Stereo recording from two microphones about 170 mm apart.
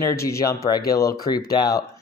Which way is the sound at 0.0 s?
15° left (ahead or behind).